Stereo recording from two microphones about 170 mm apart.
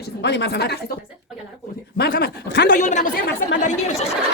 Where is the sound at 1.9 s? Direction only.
75° left (ahead or behind); by 2.8 s 90° left.